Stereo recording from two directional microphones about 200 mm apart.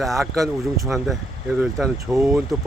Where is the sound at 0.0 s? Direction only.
Centre (ahead or behind).